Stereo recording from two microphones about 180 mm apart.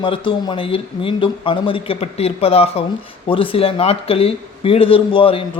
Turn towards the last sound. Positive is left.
turn(degrees=30)  # may be behind; listen again after turning